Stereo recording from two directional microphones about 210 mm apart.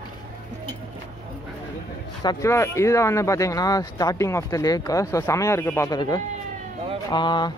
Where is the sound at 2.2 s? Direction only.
15° left (ahead or behind).